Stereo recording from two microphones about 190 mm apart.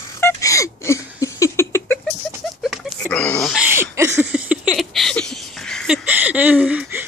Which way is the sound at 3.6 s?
10° right (ahead or behind).